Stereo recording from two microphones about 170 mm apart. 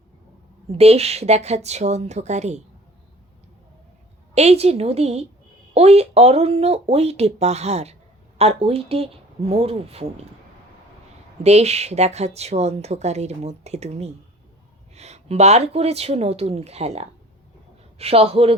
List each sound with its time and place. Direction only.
0.7 s a woman's voice: 35° right (ahead or behind)
4.4 s a woman's voice: 40° right (ahead or behind)
11.4 s a woman's voice: 40° right (ahead or behind)